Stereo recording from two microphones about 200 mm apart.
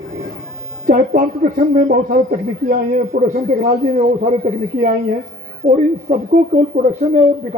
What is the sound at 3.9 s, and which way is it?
Speech, 60° right (ahead or behind).